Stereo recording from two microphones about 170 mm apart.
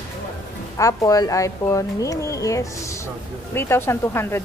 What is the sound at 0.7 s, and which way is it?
A woman's voice, 20° left (ahead or behind).